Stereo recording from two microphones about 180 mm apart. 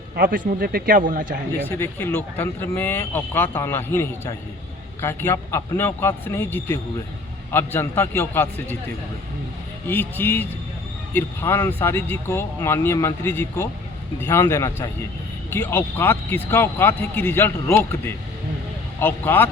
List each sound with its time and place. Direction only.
0.2 s a man's voice: 50° right (ahead or behind)
1.8 s speech: 10° left (ahead or behind)
9.8 s speech: 10° left (ahead or behind)